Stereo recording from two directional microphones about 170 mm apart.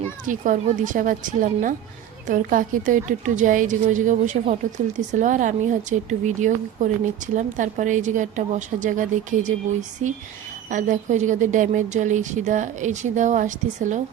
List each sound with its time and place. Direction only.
0.3 s a woman's voice: 50° right (ahead or behind)
10.7 s a woman's voice: 45° right (ahead or behind)